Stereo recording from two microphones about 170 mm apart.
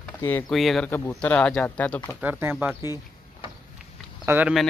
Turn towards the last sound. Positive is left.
turn(degrees=-10)  # may be behind; listen again after turning